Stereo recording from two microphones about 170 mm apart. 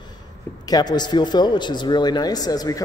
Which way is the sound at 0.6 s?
25° left (ahead or behind).